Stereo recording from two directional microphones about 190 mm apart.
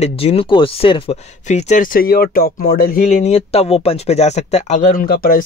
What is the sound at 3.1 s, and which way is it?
Speech, 35° left (ahead or behind).